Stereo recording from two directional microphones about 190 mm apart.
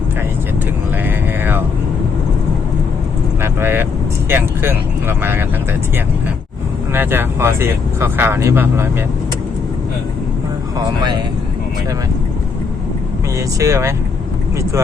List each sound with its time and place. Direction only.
1.0 s speech: 10° right (ahead or behind)
3.4 s speech: 10° right (ahead or behind)
6.9 s speech: 10° right (ahead or behind)
10.8 s speech: 20° right (ahead or behind)
13.6 s speech: 15° right (ahead or behind)